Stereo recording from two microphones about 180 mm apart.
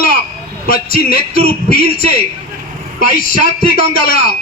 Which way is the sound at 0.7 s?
55° left (ahead or behind).